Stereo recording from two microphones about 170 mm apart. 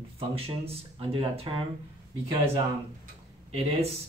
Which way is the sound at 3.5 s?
35° right (ahead or behind).